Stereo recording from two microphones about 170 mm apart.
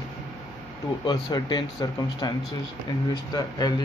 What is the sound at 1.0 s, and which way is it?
Speech, 25° left (ahead or behind).